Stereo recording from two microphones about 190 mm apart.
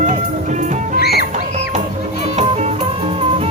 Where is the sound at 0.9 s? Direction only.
55° left (ahead or behind).